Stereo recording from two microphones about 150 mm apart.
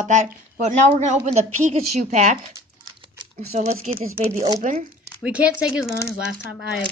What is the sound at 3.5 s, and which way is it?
Speech, 50° right (ahead or behind).